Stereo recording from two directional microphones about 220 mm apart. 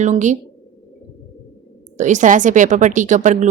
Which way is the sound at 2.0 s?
35° right (ahead or behind).